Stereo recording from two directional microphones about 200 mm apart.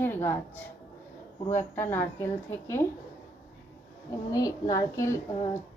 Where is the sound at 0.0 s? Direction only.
10° left (ahead or behind).